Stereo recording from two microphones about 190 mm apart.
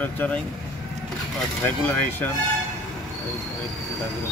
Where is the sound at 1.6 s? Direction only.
10° left (ahead or behind).